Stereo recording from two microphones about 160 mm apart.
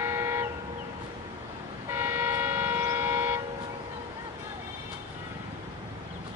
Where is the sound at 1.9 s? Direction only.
15° right (ahead or behind).